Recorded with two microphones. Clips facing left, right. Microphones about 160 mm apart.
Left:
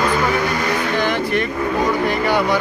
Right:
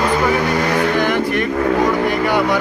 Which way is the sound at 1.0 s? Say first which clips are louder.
Right 2 dB; 10° right (ahead or behind).